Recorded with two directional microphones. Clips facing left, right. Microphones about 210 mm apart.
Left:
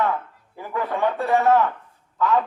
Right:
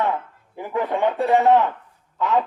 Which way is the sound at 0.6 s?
20° right (ahead or behind).